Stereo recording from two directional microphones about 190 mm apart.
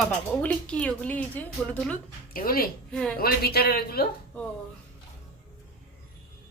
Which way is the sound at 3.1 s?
55° left (ahead or behind).